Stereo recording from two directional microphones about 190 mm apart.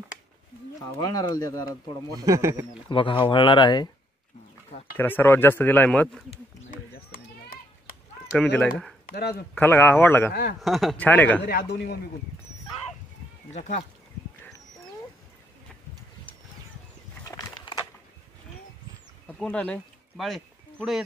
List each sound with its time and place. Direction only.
0.9 s speech: 20° left (ahead or behind)
2.1 s speech: 15° right (ahead or behind)
2.9 s speech: 25° left (ahead or behind)
4.9 s speech: 10° left (ahead or behind)
7.1 s children playing: 50° left (ahead or behind)
8.5 s speech: 5° left (ahead or behind)
9.1 s speech: 55° left (ahead or behind)
9.6 s speech: 10° left (ahead or behind)
10.6 s speech: centre (ahead or behind)
11.4 s speech: 55° left (ahead or behind)
13.5 s speech: 35° left (ahead or behind)
17.2 s a sound: 20° left (ahead or behind)
19.3 s speech: 5° left (ahead or behind)